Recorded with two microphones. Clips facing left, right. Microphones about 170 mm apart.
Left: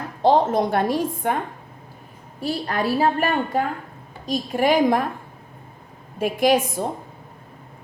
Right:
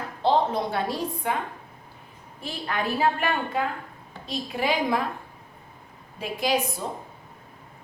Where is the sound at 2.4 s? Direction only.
40° left (ahead or behind).